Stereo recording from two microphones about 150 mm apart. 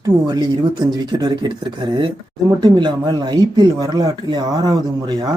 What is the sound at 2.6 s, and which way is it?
Speech, 30° right (ahead or behind).